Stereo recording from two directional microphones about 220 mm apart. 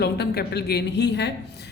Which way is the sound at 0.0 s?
50° left (ahead or behind).